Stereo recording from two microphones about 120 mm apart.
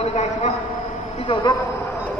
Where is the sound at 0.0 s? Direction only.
75° left (ahead or behind).